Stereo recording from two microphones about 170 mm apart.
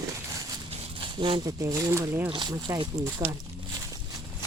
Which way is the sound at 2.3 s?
25° right (ahead or behind).